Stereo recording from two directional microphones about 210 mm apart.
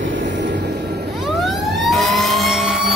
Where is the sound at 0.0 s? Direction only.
60° right (ahead or behind).